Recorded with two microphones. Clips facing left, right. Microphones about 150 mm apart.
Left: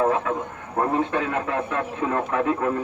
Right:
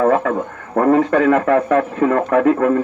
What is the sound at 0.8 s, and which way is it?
A man's voice, 70° right (ahead or behind).